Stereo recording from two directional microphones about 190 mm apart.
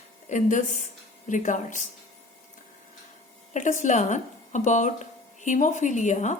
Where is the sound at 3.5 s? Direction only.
40° left (ahead or behind).